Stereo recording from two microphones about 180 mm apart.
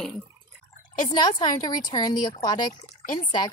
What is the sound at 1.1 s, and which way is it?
Speech, 25° left (ahead or behind).